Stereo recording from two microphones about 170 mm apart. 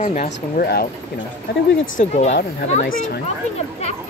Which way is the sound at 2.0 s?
45° left (ahead or behind).